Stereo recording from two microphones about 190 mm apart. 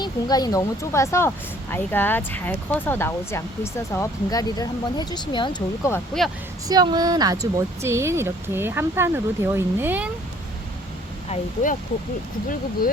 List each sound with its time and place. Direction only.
0.0 s speech: 20° left (ahead or behind)
6.7 s speech: 20° right (ahead or behind)
11.3 s speech: 45° left (ahead or behind)